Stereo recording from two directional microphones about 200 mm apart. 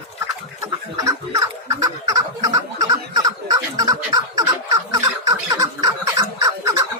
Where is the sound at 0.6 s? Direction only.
15° right (ahead or behind).